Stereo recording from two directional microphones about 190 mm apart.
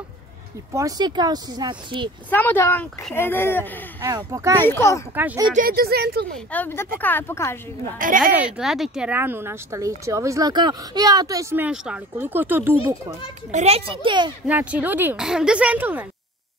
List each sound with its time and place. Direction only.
0.7 s speech: 20° right (ahead or behind)
2.2 s speech: 10° left (ahead or behind)
4.0 s speech: 15° right (ahead or behind)
4.6 s speech: 15° left (ahead or behind)
5.1 s speech: 10° right (ahead or behind)
5.5 s speech: 50° right (ahead or behind)
6.3 s speech: 10° left (ahead or behind)
8.2 s speech: 5° right (ahead or behind)
13.5 s speech: 35° right (ahead or behind)
14.4 s speech: 5° right (ahead or behind)